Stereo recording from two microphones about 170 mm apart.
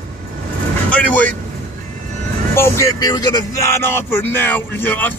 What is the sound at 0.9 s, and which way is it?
Speech, 10° left (ahead or behind).